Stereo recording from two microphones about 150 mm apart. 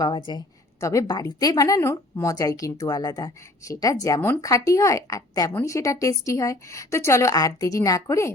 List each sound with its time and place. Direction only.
0.3 s a woman's voice: 25° left (ahead or behind)